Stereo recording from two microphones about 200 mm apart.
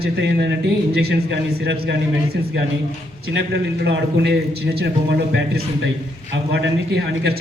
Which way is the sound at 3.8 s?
60° right (ahead or behind).